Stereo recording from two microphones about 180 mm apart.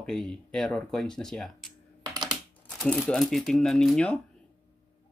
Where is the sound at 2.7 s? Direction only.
5° left (ahead or behind).